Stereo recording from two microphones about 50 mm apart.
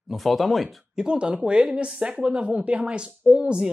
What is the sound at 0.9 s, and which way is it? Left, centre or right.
Speech, centre.